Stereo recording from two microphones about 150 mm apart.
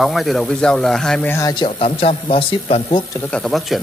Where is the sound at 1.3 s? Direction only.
25° left (ahead or behind).